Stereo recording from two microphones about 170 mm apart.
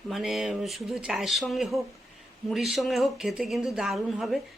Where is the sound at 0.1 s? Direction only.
Centre (ahead or behind).